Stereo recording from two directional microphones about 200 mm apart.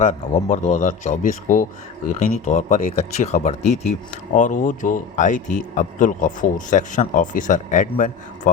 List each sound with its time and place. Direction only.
0.0 s a man's voice: 40° left (ahead or behind)